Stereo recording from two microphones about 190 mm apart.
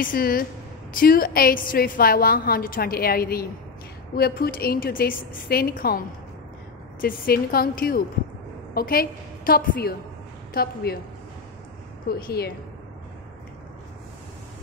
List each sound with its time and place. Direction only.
0.0 s a woman's voice: 50° left (ahead or behind)
12.1 s a woman's voice: 55° left (ahead or behind)